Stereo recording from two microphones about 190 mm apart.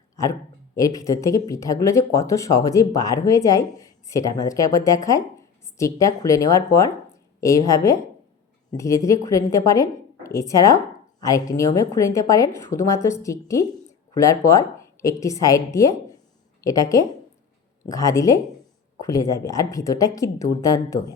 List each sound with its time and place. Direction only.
0.8 s speech: 20° left (ahead or behind)